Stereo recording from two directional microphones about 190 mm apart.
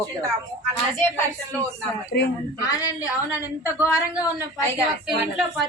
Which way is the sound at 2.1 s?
40° left (ahead or behind).